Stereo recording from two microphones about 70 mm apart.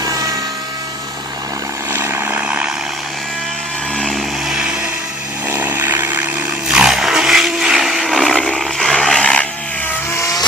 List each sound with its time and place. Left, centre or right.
0.0 s helicopter: right
1.9 s vehicle: right
4.1 s vehicle: centre
5.5 s a sound: right
6.7 s wild animals: centre
8.5 s a sound: centre
10.2 s vehicle: left